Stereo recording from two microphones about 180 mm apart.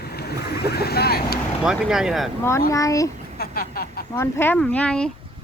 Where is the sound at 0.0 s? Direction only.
65° left (ahead or behind).